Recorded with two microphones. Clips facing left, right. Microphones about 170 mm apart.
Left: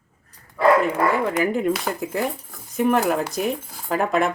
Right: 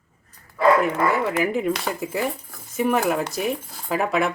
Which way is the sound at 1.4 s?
5° right (ahead or behind).